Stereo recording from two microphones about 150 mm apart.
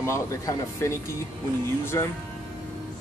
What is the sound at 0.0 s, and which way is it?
Speech, 20° left (ahead or behind).